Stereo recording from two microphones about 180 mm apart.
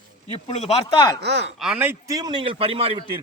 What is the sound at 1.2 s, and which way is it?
Speech, 75° right (ahead or behind).